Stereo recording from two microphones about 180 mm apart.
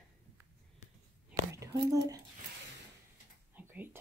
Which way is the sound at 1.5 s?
20° right (ahead or behind).